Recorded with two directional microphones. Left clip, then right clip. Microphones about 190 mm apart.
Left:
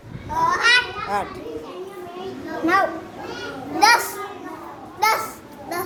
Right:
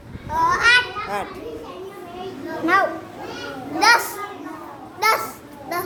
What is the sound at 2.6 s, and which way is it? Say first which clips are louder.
Speech: right 1 dB; centre (ahead or behind).